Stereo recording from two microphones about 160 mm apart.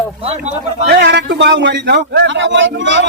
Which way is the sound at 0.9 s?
90° right.